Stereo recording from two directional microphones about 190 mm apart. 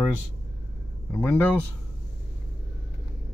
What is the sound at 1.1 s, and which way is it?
Speech, 10° left (ahead or behind).